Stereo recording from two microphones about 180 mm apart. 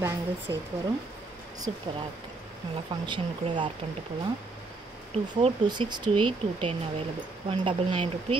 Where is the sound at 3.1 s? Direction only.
25° right (ahead or behind).